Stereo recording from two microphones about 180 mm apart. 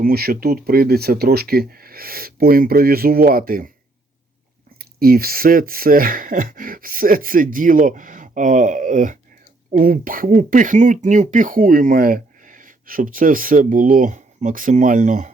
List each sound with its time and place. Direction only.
0.0 s speech: 60° right (ahead or behind)
4.8 s speech: 55° right (ahead or behind)